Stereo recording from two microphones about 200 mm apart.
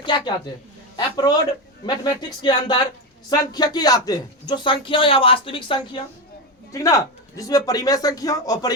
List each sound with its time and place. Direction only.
0.0 s a man's voice: 25° left (ahead or behind)
2.4 s speech: 25° left (ahead or behind)